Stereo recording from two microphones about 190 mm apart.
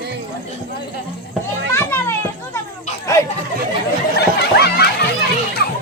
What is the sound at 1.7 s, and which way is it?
Children playing, 15° left (ahead or behind).